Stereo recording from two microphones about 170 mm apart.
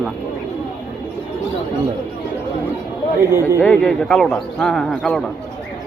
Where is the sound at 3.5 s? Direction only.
10° left (ahead or behind).